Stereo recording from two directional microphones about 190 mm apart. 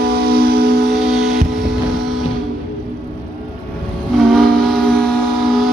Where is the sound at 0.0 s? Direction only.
55° right (ahead or behind).